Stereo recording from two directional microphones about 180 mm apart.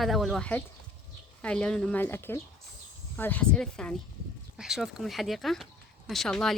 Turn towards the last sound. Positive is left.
turn(degrees=0)  # may be behind; listen again after turning